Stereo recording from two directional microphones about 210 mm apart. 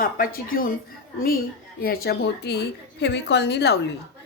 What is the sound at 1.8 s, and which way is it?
A woman's voice, 45° left (ahead or behind).